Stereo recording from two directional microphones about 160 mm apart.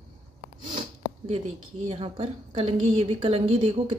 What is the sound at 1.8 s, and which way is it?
A woman's voice, 35° right (ahead or behind).